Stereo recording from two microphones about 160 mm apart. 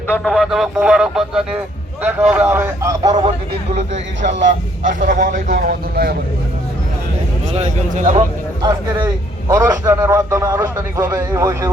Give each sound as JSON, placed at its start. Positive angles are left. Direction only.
{"t": 0.3, "sound": "a man's voice", "side_deg": 0}
{"t": 4.9, "sound": "a man's voice", "side_deg": -55}
{"t": 7.5, "sound": "a man's voice", "side_deg": -45}
{"t": 9.0, "sound": "a man's voice", "side_deg": -20}